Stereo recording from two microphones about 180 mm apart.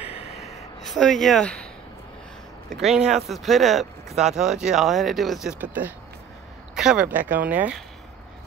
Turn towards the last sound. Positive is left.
turn(degrees=-10)  # may be behind; listen again after turning